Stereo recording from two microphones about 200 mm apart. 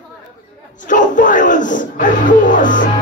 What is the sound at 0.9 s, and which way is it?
Music, 40° left (ahead or behind).